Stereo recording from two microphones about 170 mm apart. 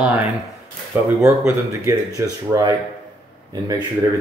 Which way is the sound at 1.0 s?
15° right (ahead or behind).